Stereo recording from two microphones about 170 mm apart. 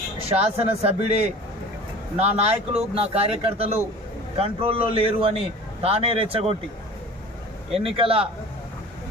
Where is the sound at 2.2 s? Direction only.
35° right (ahead or behind).